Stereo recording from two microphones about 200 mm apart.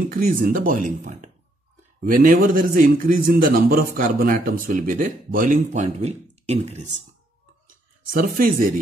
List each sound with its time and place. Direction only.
0.1 s a man's voice: 45° right (ahead or behind)
8.1 s a man's voice: 45° right (ahead or behind)